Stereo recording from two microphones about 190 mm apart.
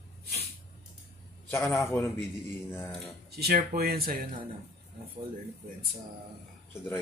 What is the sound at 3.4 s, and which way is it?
Speech, 55° right (ahead or behind).